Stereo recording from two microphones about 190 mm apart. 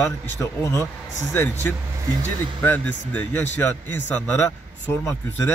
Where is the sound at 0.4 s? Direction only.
15° left (ahead or behind).